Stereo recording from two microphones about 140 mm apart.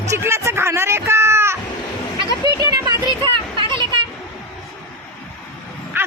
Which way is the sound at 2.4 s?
30° right (ahead or behind).